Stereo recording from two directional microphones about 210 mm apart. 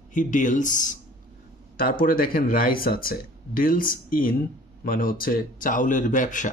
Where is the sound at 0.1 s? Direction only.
35° left (ahead or behind).